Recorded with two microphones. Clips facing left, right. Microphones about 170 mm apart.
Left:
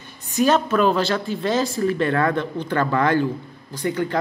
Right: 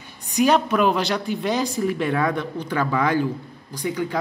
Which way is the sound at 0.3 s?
15° right (ahead or behind).